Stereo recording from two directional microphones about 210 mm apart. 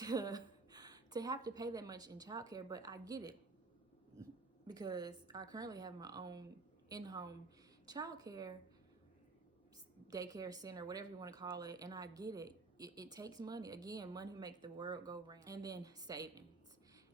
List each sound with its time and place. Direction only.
0.0 s a woman's voice: 20° right (ahead or behind)
4.6 s speech: 20° right (ahead or behind)
10.1 s speech: 15° right (ahead or behind)